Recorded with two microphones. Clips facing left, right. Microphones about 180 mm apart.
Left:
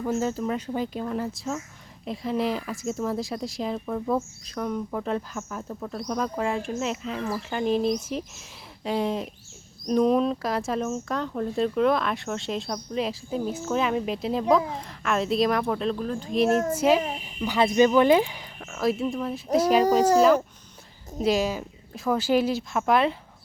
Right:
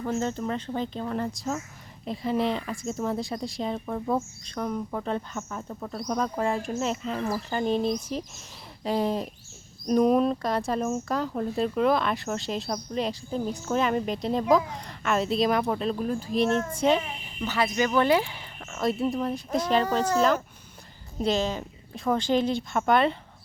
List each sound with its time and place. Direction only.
0.0 s speech: 5° left (ahead or behind)
16.3 s speech: centre (ahead or behind)
17.6 s speech: 20° left (ahead or behind)
18.6 s speech: centre (ahead or behind)
21.2 s speech: 5° left (ahead or behind)